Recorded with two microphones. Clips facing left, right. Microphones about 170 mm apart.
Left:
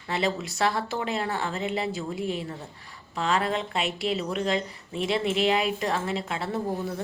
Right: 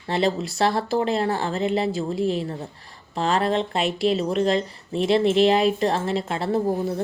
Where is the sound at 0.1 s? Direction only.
35° right (ahead or behind).